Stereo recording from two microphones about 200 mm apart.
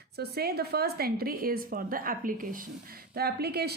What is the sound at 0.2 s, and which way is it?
Speech, 50° right (ahead or behind).